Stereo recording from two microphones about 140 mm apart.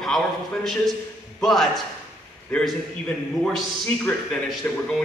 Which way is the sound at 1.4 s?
Centre (ahead or behind).